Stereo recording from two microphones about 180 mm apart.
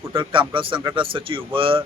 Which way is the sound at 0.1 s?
30° right (ahead or behind).